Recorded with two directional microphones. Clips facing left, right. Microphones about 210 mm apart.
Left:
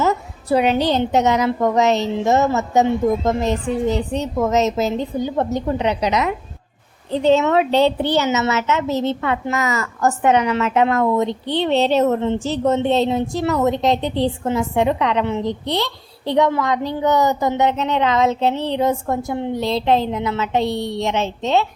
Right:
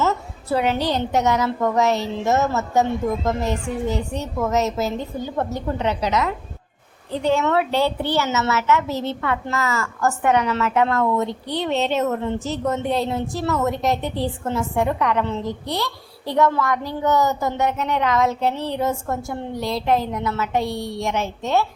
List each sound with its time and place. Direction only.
0.0 s a woman's voice: 15° left (ahead or behind)